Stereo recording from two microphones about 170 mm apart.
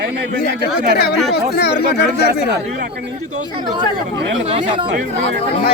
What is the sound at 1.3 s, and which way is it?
Speech, 70° left (ahead or behind).